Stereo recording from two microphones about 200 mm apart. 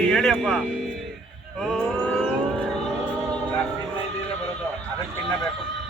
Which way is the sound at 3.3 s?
5° left (ahead or behind).